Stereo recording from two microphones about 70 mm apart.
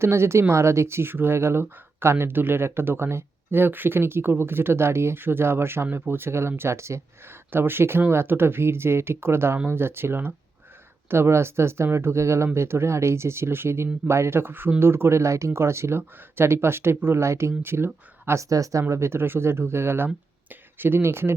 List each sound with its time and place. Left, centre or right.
0.0 s speech: right
18.3 s speech: right